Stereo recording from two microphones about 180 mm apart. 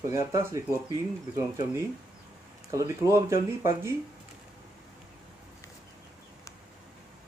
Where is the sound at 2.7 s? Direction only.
15° right (ahead or behind).